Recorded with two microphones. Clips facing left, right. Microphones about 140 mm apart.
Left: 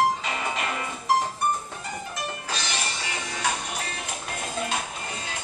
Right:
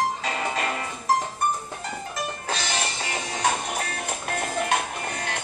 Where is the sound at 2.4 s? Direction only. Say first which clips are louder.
Right 3 dB; 50° right (ahead or behind).